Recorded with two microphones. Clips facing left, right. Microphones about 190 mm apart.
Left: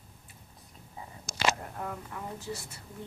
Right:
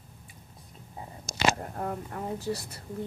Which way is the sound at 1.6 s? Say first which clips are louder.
Right 5 dB; 40° right (ahead or behind).